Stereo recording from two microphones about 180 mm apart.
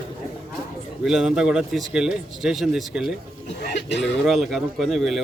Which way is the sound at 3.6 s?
70° left (ahead or behind).